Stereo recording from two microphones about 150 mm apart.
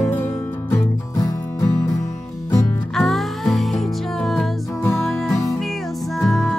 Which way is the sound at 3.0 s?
Centre (ahead or behind).